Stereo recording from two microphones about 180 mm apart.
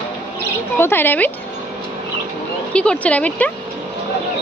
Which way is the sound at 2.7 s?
5° left (ahead or behind).